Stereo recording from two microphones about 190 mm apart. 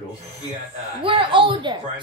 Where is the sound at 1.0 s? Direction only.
25° right (ahead or behind).